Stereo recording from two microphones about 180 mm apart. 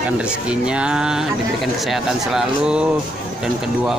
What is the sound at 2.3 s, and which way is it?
Speech, 5° right (ahead or behind).